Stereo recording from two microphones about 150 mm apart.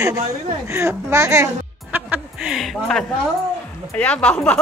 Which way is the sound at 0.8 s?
20° right (ahead or behind).